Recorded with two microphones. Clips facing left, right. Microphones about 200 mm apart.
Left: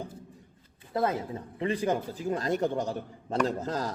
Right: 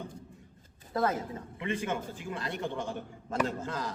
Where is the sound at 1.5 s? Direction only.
35° left (ahead or behind).